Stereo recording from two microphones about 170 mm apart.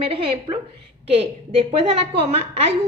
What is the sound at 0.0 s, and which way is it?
Speech, 35° right (ahead or behind).